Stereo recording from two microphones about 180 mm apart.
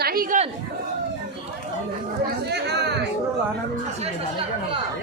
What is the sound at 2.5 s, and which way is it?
Chatter, 65° right (ahead or behind).